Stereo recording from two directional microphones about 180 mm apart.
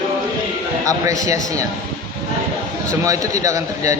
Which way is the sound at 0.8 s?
20° right (ahead or behind).